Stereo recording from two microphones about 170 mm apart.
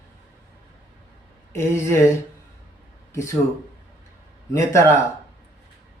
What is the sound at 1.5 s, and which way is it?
Speech, 15° left (ahead or behind).